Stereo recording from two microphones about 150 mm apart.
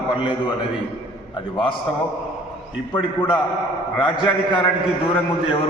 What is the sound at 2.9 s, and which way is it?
A man's voice, 30° left (ahead or behind).